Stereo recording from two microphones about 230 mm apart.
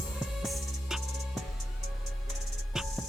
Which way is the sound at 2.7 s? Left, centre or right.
Centre.